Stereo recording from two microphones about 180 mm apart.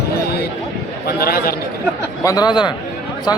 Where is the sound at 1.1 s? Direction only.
55° left (ahead or behind).